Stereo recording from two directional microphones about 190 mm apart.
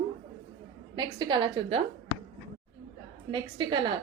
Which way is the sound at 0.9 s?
25° right (ahead or behind).